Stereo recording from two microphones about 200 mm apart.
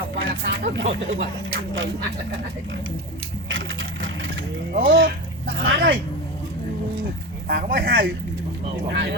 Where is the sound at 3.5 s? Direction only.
80° right.